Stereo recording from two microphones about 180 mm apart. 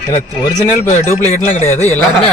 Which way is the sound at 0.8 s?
40° left (ahead or behind).